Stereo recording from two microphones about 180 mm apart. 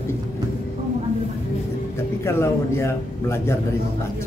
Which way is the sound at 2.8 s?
15° left (ahead or behind).